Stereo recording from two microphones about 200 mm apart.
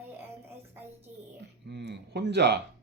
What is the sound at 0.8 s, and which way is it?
Speech, 10° right (ahead or behind).